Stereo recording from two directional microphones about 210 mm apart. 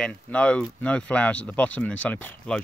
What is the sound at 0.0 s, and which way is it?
Speech, 5° left (ahead or behind).